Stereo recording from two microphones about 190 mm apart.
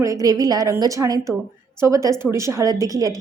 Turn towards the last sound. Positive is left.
turn(degrees=-20)  # may be behind; listen again after turning